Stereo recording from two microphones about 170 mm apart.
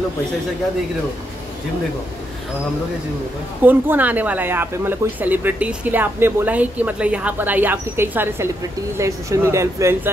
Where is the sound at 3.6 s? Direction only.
10° right (ahead or behind).